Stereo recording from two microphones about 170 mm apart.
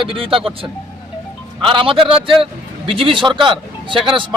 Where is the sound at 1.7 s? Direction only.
30° right (ahead or behind).